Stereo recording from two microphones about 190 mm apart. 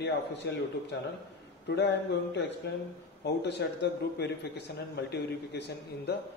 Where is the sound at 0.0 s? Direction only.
65° left (ahead or behind).